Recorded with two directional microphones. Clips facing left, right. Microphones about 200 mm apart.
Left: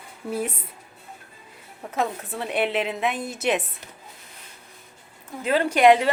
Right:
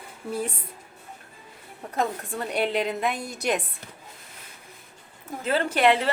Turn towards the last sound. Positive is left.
turn(degrees=15)  # may be behind; listen again after turning